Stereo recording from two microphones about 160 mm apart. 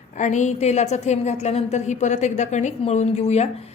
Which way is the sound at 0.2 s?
50° left (ahead or behind).